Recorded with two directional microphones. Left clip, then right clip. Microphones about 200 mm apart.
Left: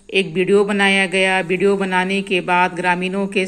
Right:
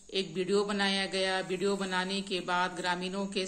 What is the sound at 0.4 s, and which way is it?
Speech, 25° left (ahead or behind).